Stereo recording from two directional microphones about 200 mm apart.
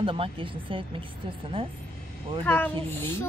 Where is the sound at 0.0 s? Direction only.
25° right (ahead or behind).